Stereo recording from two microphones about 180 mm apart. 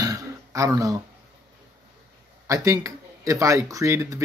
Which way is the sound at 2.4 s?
15° right (ahead or behind).